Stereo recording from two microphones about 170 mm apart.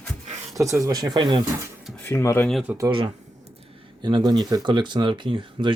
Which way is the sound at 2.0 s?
15° left (ahead or behind).